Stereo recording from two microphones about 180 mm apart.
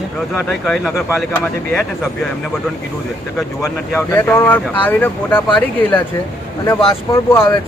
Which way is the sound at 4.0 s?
10° left (ahead or behind).